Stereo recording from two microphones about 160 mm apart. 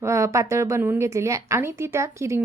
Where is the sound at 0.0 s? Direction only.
20° right (ahead or behind).